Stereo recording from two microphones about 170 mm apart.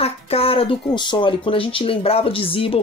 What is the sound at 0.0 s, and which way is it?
Speech, 35° left (ahead or behind).